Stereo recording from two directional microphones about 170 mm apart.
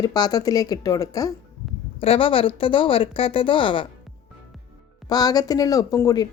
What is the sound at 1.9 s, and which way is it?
A woman's voice, 35° left (ahead or behind).